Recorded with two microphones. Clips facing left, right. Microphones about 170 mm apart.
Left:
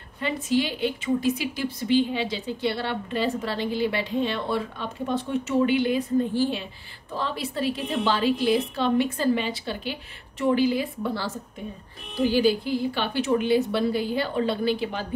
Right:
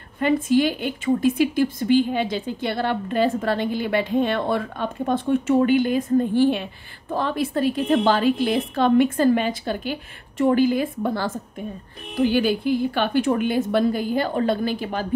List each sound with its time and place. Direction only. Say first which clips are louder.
0.2 s a woman's voice: right 6 dB; 50° right (ahead or behind)